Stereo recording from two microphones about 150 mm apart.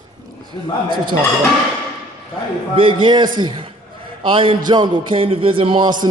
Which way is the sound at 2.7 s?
35° right (ahead or behind).